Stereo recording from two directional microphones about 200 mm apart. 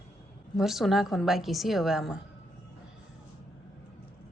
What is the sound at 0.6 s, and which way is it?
A woman's voice, centre (ahead or behind).